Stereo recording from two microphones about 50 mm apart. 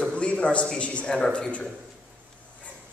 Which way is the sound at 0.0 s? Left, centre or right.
Left.